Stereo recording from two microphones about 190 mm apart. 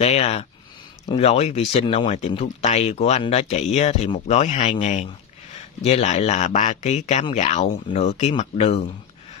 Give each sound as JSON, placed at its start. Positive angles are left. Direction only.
{"t": 0.0, "sound": "speech", "side_deg": 35}